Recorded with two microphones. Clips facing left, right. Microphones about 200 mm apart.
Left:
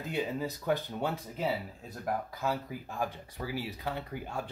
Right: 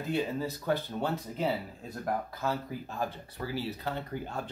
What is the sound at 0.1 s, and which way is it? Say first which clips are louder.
Speech: right 2 dB; 15° left (ahead or behind).